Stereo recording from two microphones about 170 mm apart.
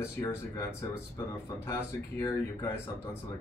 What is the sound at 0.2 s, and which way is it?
Speech, 15° left (ahead or behind).